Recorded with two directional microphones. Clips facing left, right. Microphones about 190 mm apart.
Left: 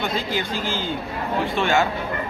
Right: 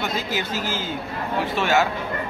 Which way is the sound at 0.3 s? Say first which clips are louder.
Left 1 dB; 5° right (ahead or behind).